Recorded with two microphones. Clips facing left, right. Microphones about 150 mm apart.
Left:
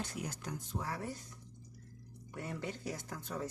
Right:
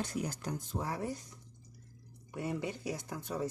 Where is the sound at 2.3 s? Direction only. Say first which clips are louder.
Right 5 dB; 15° right (ahead or behind).